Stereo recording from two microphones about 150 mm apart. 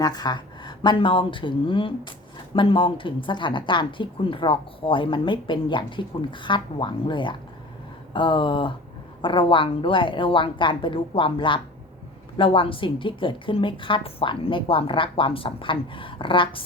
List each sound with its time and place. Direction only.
0.0 s speech: 25° left (ahead or behind)